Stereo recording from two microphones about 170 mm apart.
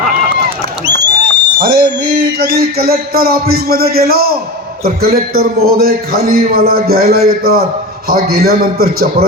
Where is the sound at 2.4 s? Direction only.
65° right (ahead or behind).